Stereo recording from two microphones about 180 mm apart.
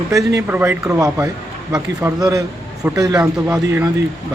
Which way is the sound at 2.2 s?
20° right (ahead or behind).